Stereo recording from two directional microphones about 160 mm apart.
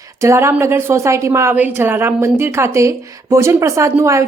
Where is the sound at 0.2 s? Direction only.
15° right (ahead or behind).